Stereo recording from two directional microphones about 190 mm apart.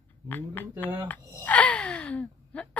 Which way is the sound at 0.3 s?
10° left (ahead or behind).